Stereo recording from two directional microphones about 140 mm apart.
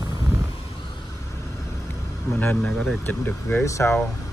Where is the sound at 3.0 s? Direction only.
15° left (ahead or behind).